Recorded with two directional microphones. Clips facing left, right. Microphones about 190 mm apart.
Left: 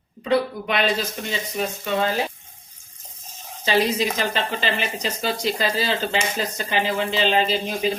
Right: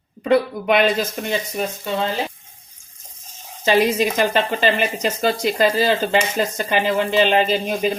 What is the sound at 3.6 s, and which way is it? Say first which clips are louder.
Speech: right 4 dB; 50° right (ahead or behind).